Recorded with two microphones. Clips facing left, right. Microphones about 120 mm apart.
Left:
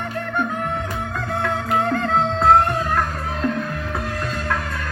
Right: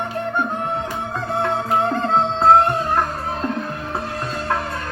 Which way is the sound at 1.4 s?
25° right (ahead or behind).